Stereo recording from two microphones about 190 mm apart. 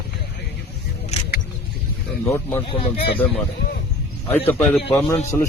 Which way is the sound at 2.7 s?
30° left (ahead or behind).